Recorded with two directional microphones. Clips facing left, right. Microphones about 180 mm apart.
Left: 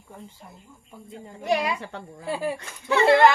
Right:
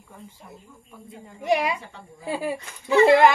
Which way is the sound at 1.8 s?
70° left (ahead or behind).